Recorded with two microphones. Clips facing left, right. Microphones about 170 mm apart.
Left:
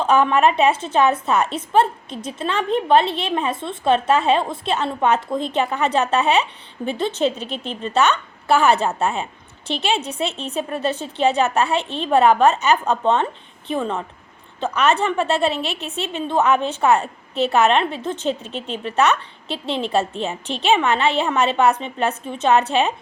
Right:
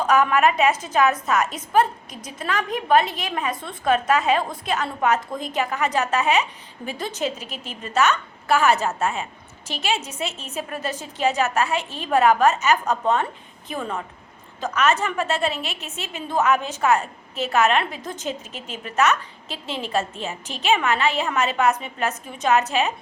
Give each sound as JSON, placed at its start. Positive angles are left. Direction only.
{"t": 0.0, "sound": "a woman's voice", "side_deg": 30}
{"t": 7.5, "sound": "a woman's voice", "side_deg": -5}
{"t": 7.8, "sound": "a woman's voice", "side_deg": 30}
{"t": 10.1, "sound": "a woman's voice", "side_deg": 30}
{"t": 15.5, "sound": "a woman's voice", "side_deg": 0}
{"t": 16.1, "sound": "a woman's voice", "side_deg": 25}
{"t": 19.5, "sound": "a woman's voice", "side_deg": 0}
{"t": 20.2, "sound": "a woman's voice", "side_deg": 30}